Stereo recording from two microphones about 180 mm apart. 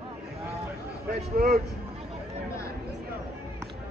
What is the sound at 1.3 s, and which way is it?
Speech, 65° right (ahead or behind).